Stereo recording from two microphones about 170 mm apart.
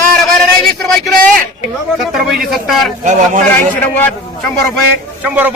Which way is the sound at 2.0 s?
Centre (ahead or behind).